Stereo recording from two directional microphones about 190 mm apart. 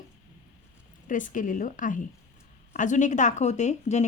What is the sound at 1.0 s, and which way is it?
A woman's voice, 45° left (ahead or behind).